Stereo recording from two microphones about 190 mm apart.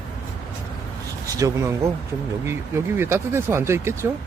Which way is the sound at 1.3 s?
15° right (ahead or behind).